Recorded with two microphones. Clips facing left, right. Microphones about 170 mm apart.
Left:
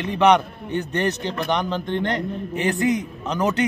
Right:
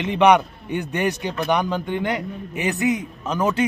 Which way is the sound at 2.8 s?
25° right (ahead or behind).